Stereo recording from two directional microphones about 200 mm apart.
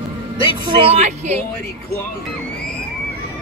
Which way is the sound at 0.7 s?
30° right (ahead or behind).